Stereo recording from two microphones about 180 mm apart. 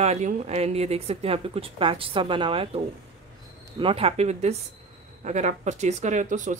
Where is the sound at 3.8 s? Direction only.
30° right (ahead or behind).